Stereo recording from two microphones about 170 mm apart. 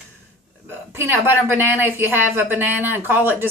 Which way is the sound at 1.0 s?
10° right (ahead or behind).